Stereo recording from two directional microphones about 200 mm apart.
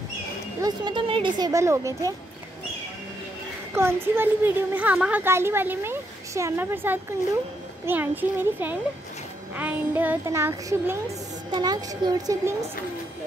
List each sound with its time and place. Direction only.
0.6 s speech: 20° right (ahead or behind)
3.7 s a woman's voice: 10° right (ahead or behind)